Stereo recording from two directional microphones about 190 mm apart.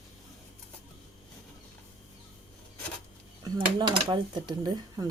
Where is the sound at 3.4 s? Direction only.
20° right (ahead or behind).